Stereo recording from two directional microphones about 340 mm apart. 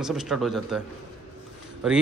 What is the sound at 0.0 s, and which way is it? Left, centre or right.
Speech, centre.